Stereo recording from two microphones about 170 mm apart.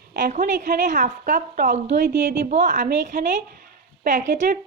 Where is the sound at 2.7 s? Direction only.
50° right (ahead or behind).